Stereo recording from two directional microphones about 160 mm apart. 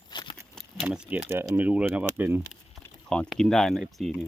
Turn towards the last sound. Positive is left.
turn(degrees=0)  # may be behind; listen again after turning